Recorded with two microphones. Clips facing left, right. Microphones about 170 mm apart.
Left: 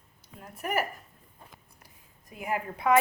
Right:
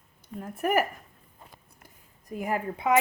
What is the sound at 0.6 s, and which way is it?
Speech, 50° right (ahead or behind).